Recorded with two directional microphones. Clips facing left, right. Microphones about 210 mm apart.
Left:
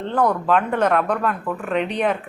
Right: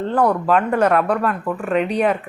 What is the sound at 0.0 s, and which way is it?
A woman's voice, 5° right (ahead or behind).